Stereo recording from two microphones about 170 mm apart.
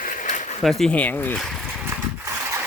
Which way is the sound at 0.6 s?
Centre (ahead or behind).